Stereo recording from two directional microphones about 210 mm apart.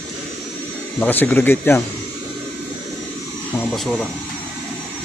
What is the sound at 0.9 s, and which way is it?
Speech, 10° left (ahead or behind).